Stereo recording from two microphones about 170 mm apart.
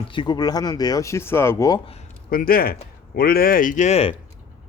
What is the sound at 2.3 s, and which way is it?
Speech, 55° left (ahead or behind).